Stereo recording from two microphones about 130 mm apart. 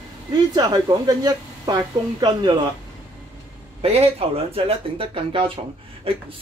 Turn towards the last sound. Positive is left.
turn(degrees=-50)  # may be behind; listen again after turning